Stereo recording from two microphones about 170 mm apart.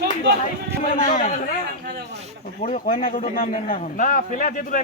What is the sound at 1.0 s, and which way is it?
Speech, 50° left (ahead or behind).